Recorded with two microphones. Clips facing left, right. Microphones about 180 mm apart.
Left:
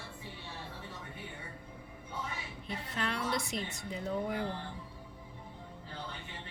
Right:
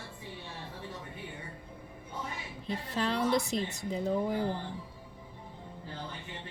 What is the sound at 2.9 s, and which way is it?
Speech, 35° right (ahead or behind).